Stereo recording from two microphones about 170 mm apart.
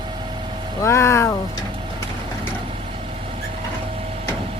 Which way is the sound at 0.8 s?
15° left (ahead or behind).